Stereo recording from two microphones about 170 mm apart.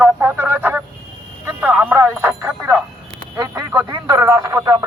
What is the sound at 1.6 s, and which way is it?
Music, 10° right (ahead or behind).